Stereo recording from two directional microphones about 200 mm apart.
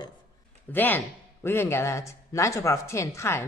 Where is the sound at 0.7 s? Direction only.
10° left (ahead or behind).